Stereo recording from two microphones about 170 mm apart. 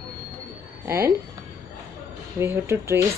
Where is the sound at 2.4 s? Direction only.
15° right (ahead or behind).